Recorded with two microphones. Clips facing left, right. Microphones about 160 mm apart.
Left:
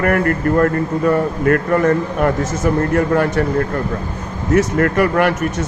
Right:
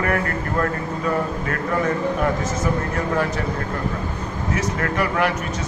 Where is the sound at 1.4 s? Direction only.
55° left (ahead or behind).